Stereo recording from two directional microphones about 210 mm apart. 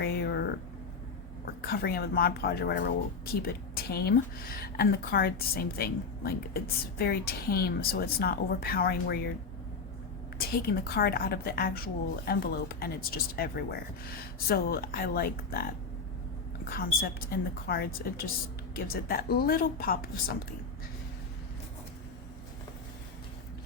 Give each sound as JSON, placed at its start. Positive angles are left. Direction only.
{"t": 0.0, "sound": "a sound", "side_deg": 50}
{"t": 1.6, "sound": "a woman's voice", "side_deg": 50}
{"t": 10.3, "sound": "a woman's voice", "side_deg": 50}
{"t": 16.6, "sound": "a woman's voice", "side_deg": 45}